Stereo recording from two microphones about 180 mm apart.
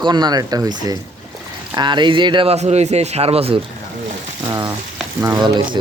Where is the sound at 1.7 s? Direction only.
25° right (ahead or behind).